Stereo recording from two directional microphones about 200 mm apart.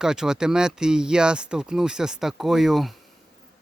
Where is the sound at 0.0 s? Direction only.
5° right (ahead or behind).